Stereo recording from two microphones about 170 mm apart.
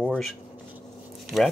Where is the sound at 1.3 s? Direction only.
Centre (ahead or behind).